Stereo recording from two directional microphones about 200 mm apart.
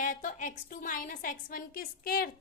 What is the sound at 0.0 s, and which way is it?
A woman's voice, 40° left (ahead or behind).